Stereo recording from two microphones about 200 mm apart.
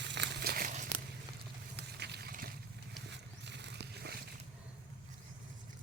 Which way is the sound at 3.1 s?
60° right (ahead or behind).